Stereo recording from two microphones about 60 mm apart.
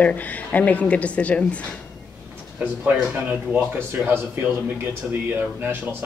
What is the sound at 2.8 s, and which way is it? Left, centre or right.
Speech, right.